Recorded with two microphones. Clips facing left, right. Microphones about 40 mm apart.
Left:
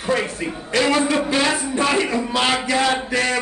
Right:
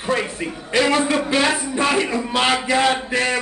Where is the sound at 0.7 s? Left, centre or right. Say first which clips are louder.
Even; centre.